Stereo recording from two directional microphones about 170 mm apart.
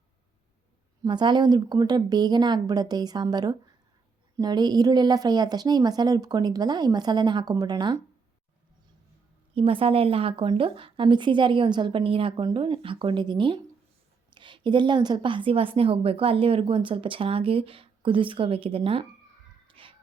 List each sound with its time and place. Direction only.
1.0 s a woman's voice: 25° right (ahead or behind)
9.6 s a woman's voice: 35° right (ahead or behind)
19.6 s music: 30° right (ahead or behind)